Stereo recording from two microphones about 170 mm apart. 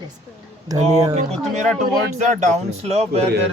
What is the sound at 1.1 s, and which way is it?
Speech, 45° right (ahead or behind).